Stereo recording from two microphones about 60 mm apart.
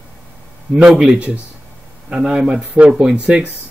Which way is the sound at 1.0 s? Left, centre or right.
Right.